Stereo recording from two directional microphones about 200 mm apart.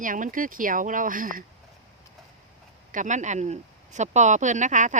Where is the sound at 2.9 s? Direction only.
40° right (ahead or behind).